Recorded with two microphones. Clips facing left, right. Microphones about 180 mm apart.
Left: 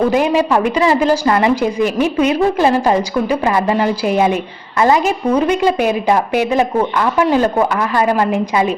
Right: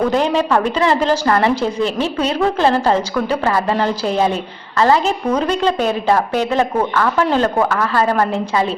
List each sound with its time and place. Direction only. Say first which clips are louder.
0.1 s a woman's voice: left 2 dB; 10° left (ahead or behind)